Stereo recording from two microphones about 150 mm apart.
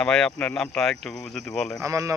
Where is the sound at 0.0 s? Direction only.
5° left (ahead or behind).